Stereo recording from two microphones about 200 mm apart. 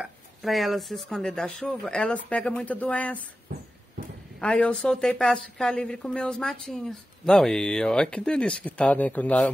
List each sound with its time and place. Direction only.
0.0 s speech: centre (ahead or behind)
4.4 s speech: 5° left (ahead or behind)